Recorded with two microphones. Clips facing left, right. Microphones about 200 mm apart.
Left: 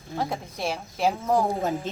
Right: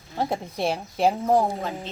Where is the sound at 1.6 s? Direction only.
45° left (ahead or behind).